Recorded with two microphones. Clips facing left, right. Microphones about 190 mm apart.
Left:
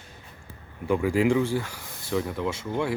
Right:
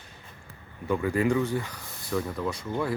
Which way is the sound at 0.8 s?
15° left (ahead or behind).